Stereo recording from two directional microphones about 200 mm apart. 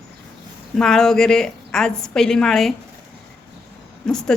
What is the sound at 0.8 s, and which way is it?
A woman's voice, centre (ahead or behind).